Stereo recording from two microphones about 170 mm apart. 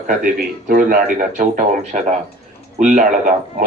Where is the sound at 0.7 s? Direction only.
55° right (ahead or behind).